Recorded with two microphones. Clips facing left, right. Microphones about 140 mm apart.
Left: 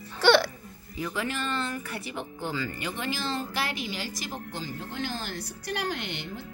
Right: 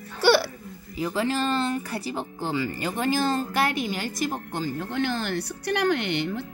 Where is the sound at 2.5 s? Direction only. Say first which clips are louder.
Right 7 dB; 20° right (ahead or behind).